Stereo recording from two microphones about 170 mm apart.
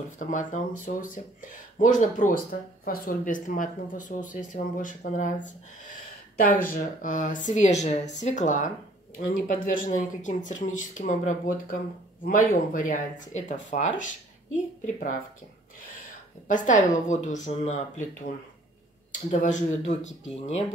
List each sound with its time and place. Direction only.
0.2 s speech: 50° left (ahead or behind)
16.4 s speech: 50° left (ahead or behind)
19.4 s speech: 45° left (ahead or behind)